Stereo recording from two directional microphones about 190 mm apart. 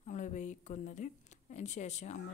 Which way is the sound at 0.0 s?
40° left (ahead or behind).